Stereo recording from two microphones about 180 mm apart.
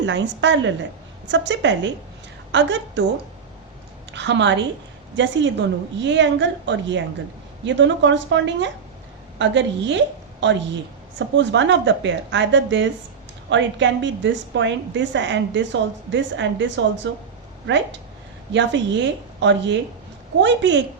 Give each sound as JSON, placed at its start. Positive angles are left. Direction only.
{"t": 0.0, "sound": "a woman's voice", "side_deg": -90}
{"t": 4.1, "sound": "a woman's voice", "side_deg": -80}